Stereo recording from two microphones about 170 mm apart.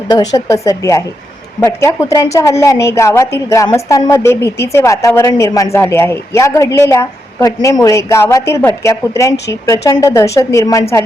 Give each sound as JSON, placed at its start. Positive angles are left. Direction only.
{"t": 0.1, "sound": "a woman's voice", "side_deg": 20}